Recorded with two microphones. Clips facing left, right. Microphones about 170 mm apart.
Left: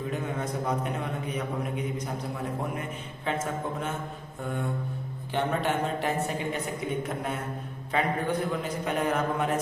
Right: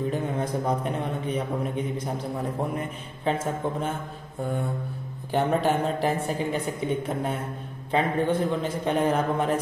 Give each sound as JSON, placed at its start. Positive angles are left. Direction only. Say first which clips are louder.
{"t": 0.1, "sound": "a woman's voice", "louder": "right 4 dB", "side_deg": -30}
{"t": 3.3, "sound": "speech", "louder": "right 4 dB", "side_deg": -30}
{"t": 5.3, "sound": "a woman's voice", "louder": "right 5 dB", "side_deg": -35}